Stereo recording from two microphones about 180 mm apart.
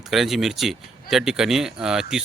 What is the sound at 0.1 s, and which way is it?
Speech, centre (ahead or behind).